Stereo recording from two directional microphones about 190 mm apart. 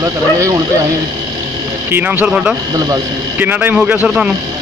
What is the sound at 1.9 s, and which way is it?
Speech, 10° right (ahead or behind).